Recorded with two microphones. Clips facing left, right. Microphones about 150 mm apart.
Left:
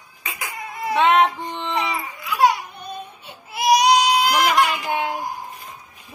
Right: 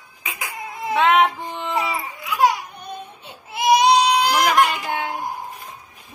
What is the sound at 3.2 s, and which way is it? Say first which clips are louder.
Baby cry: right 1 dB; 25° right (ahead or behind).